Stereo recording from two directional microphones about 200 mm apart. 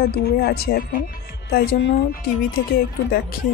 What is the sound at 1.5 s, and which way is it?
Speech, 60° left (ahead or behind).